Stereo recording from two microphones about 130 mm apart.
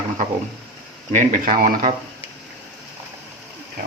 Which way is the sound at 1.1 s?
85° right.